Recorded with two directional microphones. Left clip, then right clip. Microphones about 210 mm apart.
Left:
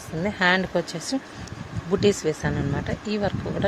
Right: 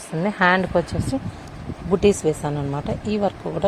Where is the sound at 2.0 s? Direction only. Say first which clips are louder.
Right 3 dB; 15° right (ahead or behind).